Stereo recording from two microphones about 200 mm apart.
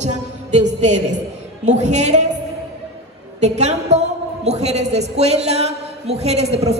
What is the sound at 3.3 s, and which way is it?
A woman's voice, 35° right (ahead or behind).